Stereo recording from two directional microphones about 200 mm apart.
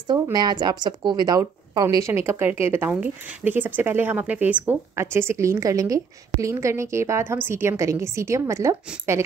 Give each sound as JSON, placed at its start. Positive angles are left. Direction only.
{"t": 0.1, "sound": "a woman's voice", "side_deg": -20}